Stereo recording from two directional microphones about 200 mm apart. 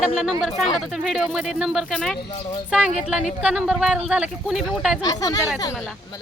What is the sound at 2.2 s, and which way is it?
Speech, 25° left (ahead or behind).